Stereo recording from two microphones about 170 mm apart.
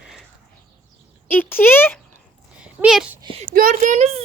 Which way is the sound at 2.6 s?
5° right (ahead or behind).